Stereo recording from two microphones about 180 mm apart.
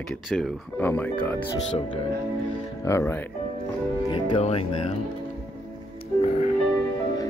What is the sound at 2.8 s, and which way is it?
Speech, 15° left (ahead or behind).